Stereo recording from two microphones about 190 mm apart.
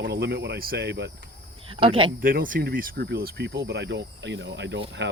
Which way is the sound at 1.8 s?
25° right (ahead or behind).